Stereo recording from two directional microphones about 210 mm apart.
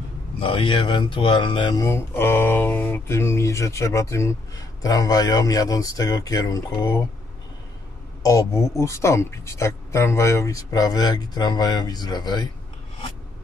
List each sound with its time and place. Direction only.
0.4 s speech: 25° left (ahead or behind)
8.2 s speech: 15° left (ahead or behind)